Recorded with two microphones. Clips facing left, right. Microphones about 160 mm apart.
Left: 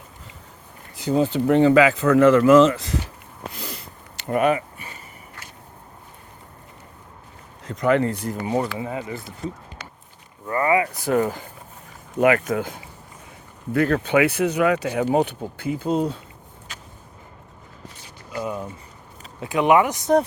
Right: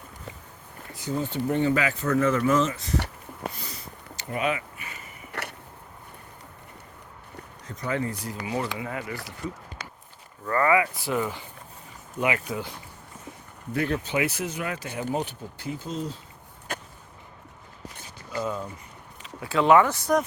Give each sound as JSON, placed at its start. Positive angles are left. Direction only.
{"t": 1.0, "sound": "speech", "side_deg": 90}
{"t": 4.3, "sound": "speech", "side_deg": 50}
{"t": 5.3, "sound": "a sound", "side_deg": -70}
{"t": 7.6, "sound": "speech", "side_deg": 80}
{"t": 8.4, "sound": "speech", "side_deg": 30}
{"t": 10.9, "sound": "speech", "side_deg": 45}
{"t": 16.7, "sound": "a sound", "side_deg": -55}
{"t": 18.3, "sound": "speech", "side_deg": 15}